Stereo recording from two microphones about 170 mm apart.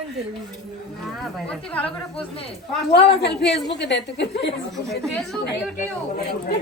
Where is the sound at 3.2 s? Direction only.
90° left.